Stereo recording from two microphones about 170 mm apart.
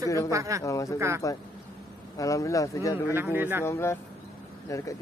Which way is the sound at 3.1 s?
10° right (ahead or behind).